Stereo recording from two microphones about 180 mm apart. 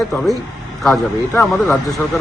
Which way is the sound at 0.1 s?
5° left (ahead or behind).